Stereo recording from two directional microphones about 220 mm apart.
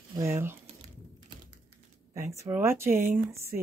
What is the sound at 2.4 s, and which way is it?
Speech, 10° right (ahead or behind).